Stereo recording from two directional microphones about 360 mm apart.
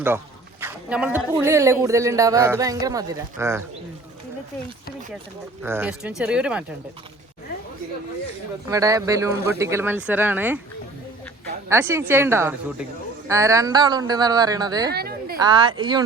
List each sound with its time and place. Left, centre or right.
0.6 s speech: centre
5.6 s speech: centre
8.7 s speech: centre
11.7 s speech: centre
14.9 s a sound: right
15.4 s speech: centre